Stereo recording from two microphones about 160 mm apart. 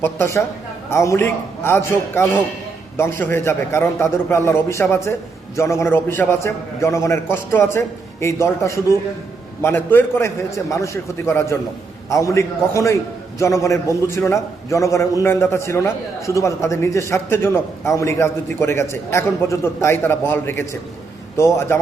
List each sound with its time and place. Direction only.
0.0 s a man's voice: 15° left (ahead or behind)